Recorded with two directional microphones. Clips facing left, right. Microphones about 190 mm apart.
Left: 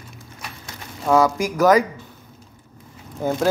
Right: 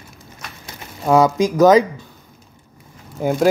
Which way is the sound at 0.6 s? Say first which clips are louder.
Right 3 dB; 20° right (ahead or behind).